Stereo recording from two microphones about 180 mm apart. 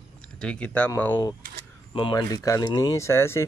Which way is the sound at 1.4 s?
50° right (ahead or behind).